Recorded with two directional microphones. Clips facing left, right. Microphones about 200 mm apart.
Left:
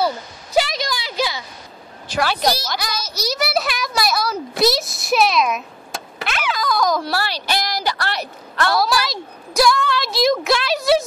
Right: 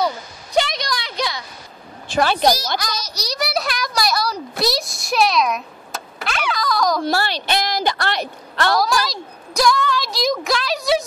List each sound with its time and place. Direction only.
0.0 s a sound: 5° left (ahead or behind)
2.4 s a child's voice: 15° right (ahead or behind)
2.8 s a child's voice: 5° left (ahead or behind)
6.2 s a sound: centre (ahead or behind)
7.0 s a woman's voice: 25° right (ahead or behind)
8.7 s a child's voice: centre (ahead or behind)